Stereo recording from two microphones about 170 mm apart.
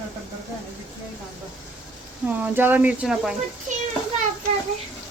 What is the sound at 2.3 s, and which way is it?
A woman's voice, 10° right (ahead or behind).